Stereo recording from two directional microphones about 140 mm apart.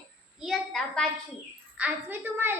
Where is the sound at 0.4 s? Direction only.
5° left (ahead or behind).